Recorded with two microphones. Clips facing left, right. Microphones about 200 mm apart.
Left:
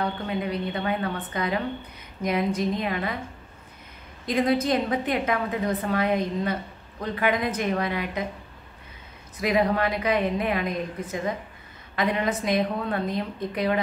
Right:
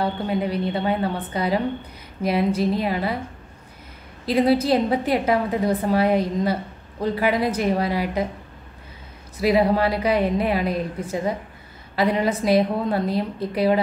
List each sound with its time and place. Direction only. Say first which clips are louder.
0.0 s a woman's voice: right 4 dB; 35° right (ahead or behind)
4.3 s a woman's voice: right 4 dB; 30° right (ahead or behind)
9.4 s a woman's voice: right 4 dB; 30° right (ahead or behind)